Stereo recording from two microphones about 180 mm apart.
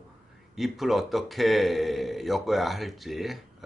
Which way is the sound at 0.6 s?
Centre (ahead or behind).